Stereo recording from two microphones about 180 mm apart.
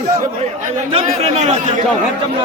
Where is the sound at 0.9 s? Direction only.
35° right (ahead or behind).